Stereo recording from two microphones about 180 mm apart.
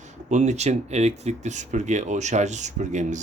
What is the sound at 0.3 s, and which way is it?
Speech, 40° right (ahead or behind).